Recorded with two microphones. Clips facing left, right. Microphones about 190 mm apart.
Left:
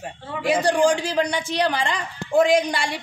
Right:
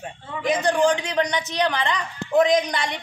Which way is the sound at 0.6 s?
30° left (ahead or behind).